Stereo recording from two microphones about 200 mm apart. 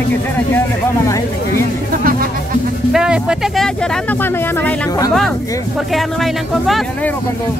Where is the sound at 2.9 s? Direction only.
5° right (ahead or behind); by 5.1 s 15° left (ahead or behind).